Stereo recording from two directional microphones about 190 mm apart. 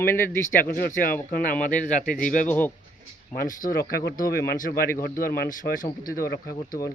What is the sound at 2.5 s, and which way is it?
Speech, 10° left (ahead or behind).